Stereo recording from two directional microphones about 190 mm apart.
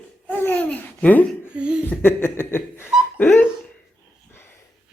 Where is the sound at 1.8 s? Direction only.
10° left (ahead or behind).